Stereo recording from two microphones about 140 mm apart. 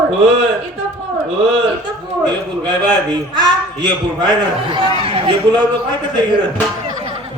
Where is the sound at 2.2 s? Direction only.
30° right (ahead or behind).